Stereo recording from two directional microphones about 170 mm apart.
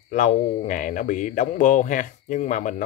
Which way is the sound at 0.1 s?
45° left (ahead or behind).